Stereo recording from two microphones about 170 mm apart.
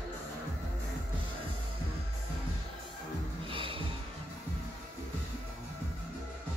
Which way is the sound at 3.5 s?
30° right (ahead or behind).